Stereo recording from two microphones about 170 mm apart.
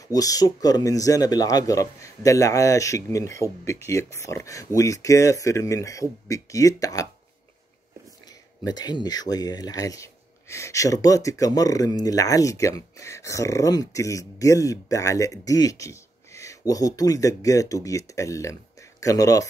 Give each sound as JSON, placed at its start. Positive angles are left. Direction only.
{"t": 0.1, "sound": "speech", "side_deg": 20}
{"t": 8.6, "sound": "speech", "side_deg": 25}